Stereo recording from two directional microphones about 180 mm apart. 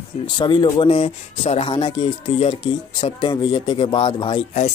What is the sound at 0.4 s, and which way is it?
Speech, 25° left (ahead or behind).